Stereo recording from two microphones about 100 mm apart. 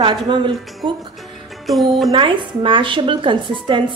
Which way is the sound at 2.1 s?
60° right (ahead or behind).